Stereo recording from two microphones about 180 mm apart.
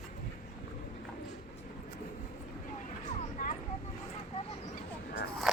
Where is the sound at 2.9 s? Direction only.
40° left (ahead or behind).